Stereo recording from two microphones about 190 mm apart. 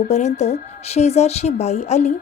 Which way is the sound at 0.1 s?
35° left (ahead or behind).